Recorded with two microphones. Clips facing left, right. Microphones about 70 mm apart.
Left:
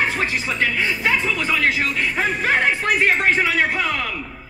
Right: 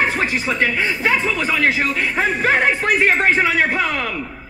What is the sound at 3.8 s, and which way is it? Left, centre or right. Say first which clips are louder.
Speech: right 2 dB; centre.